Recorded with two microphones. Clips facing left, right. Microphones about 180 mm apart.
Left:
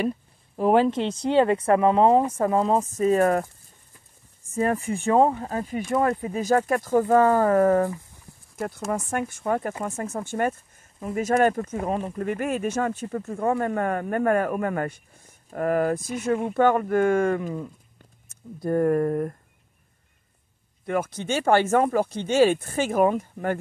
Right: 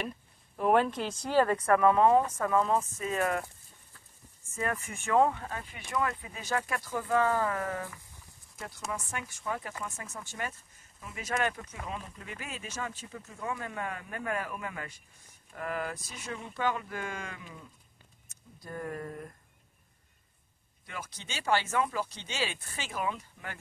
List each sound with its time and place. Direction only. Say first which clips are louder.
0.6 s speech: left 7 dB; 30° left (ahead or behind)
4.5 s speech: left 11 dB; 35° left (ahead or behind); by 17.6 s 50° left (ahead or behind)
18.6 s speech: left 17 dB; 55° left (ahead or behind)
20.8 s speech: left 17 dB; 55° left (ahead or behind)